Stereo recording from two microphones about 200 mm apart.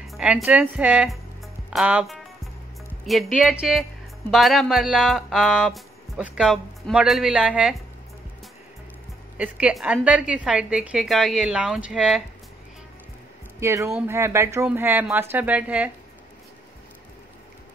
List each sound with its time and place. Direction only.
0.0 s music: centre (ahead or behind)
0.5 s speech: 5° right (ahead or behind)
9.4 s speech: 5° right (ahead or behind)
13.6 s speech: 15° right (ahead or behind)